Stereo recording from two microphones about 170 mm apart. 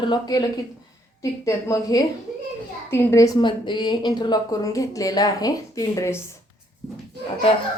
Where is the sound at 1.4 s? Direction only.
20° left (ahead or behind).